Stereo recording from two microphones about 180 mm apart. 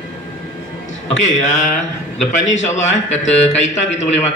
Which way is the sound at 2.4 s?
90° left.